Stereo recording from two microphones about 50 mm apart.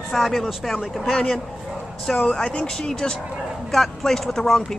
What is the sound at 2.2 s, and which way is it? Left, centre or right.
Speech, left.